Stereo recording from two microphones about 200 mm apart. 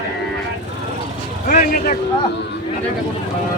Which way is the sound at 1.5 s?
40° left (ahead or behind).